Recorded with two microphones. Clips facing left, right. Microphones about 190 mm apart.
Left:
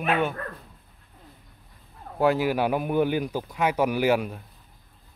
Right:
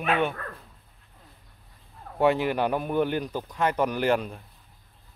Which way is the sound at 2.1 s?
Centre (ahead or behind).